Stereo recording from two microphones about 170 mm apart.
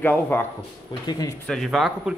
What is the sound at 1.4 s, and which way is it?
Speech, centre (ahead or behind).